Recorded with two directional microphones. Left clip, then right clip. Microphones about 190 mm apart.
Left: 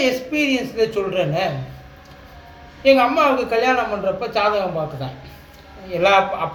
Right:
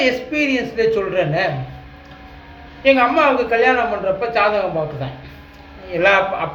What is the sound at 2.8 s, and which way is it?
A man's voice, 10° right (ahead or behind).